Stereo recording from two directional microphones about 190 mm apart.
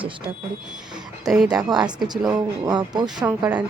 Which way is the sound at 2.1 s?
20° right (ahead or behind).